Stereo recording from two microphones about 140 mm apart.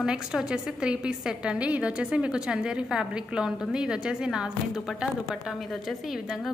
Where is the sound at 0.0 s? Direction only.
5° right (ahead or behind).